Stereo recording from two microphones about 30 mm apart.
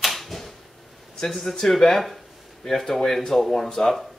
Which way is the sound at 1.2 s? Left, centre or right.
Centre.